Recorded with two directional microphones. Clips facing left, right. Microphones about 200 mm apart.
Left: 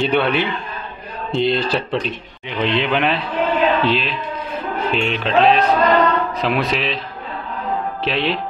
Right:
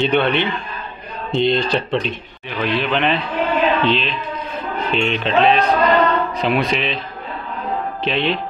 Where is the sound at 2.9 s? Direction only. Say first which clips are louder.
Even; 5° left (ahead or behind).